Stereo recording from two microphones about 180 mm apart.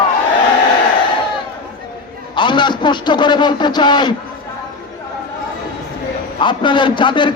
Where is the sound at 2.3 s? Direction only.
25° left (ahead or behind).